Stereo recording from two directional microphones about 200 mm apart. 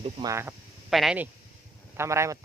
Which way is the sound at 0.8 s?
Centre (ahead or behind).